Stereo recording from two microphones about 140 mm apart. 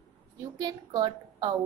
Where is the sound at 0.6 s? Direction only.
25° right (ahead or behind).